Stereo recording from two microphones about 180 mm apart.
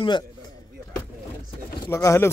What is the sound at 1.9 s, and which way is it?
Speech, 15° left (ahead or behind).